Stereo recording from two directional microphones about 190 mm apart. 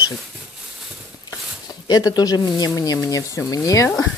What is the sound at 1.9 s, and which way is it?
Speech, 20° left (ahead or behind).